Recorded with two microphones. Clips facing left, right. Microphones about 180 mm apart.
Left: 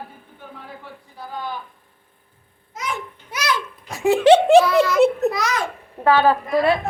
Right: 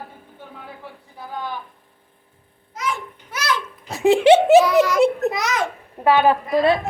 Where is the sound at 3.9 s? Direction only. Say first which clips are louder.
Even; 20° right (ahead or behind).